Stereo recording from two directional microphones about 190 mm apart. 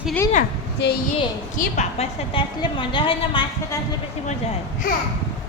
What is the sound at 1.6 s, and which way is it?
Speech, 40° left (ahead or behind).